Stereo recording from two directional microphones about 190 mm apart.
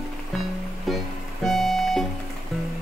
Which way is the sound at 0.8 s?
Centre (ahead or behind).